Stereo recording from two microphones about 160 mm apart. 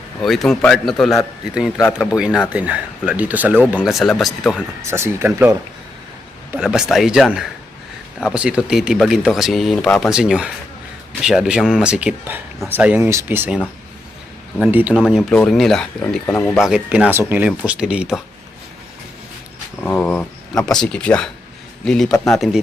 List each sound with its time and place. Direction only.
0.2 s speech: centre (ahead or behind)
1.8 s speech: 15° left (ahead or behind)
2.0 s speech: 5° right (ahead or behind)
4.9 s speech: 15° right (ahead or behind)
6.5 s speech: 5° right (ahead or behind)
14.7 s speech: 10° right (ahead or behind)
14.9 s speech: 5° left (ahead or behind)
16.6 s speech: 5° right (ahead or behind)
19.8 s speech: 10° left (ahead or behind)